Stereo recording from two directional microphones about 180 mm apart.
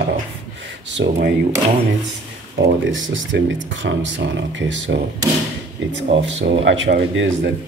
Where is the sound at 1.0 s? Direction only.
75° right (ahead or behind).